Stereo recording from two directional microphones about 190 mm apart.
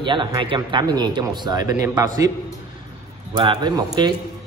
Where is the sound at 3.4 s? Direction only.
25° right (ahead or behind).